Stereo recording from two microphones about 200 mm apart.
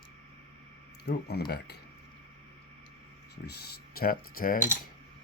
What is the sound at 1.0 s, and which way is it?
Speech, 55° left (ahead or behind).